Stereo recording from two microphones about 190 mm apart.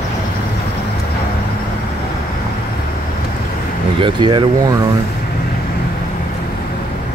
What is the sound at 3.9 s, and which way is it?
Speech, 25° right (ahead or behind).